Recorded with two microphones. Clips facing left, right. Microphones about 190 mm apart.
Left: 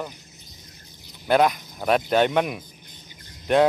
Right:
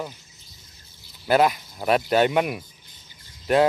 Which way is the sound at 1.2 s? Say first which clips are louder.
Even; 5° right (ahead or behind).